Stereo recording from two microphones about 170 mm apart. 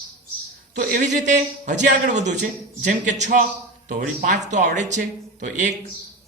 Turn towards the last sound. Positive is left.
turn(degrees=-45)  # may be behind; listen again after turning